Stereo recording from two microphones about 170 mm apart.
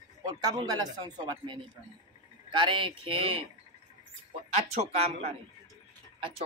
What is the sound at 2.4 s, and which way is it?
A man's voice, 30° right (ahead or behind).